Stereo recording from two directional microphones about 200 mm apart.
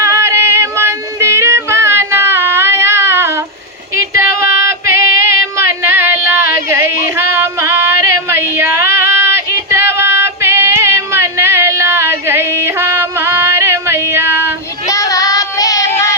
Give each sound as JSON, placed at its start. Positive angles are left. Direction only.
{"t": 0.0, "sound": "child singing", "side_deg": -15}
{"t": 3.9, "sound": "female singing", "side_deg": -15}
{"t": 5.4, "sound": "a sound", "side_deg": -15}
{"t": 14.8, "sound": "child singing", "side_deg": 15}